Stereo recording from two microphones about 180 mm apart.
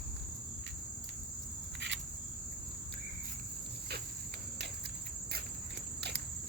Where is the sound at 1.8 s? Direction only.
80° right.